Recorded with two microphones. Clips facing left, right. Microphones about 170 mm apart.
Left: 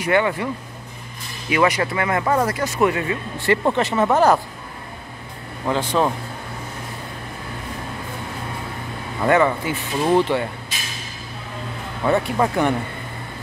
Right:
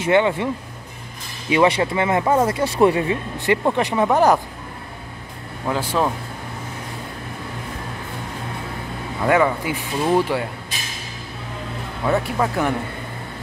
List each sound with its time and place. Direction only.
0.0 s speech: 25° right (ahead or behind)
1.5 s speech: 25° right (ahead or behind)
5.7 s speech: 5° right (ahead or behind)
9.2 s speech: 5° right (ahead or behind)
12.0 s speech: centre (ahead or behind)